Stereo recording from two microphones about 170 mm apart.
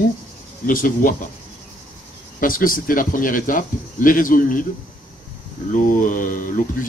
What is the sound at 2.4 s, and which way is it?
Speech, 55° left (ahead or behind).